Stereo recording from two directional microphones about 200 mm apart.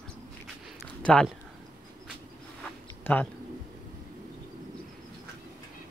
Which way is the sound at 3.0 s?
10° left (ahead or behind).